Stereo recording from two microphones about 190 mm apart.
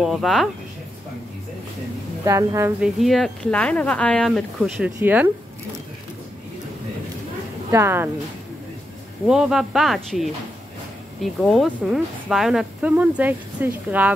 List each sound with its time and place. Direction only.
0.0 s speech: centre (ahead or behind)
2.2 s a woman's voice: 15° right (ahead or behind)
2.8 s a woman's voice: centre (ahead or behind)
7.7 s a woman's voice: 10° right (ahead or behind)
9.3 s speech: centre (ahead or behind)